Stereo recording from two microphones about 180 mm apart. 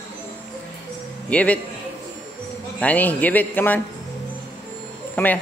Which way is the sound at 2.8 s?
10° left (ahead or behind).